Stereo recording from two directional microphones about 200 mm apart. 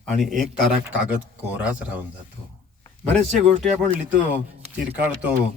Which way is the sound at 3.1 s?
5° left (ahead or behind).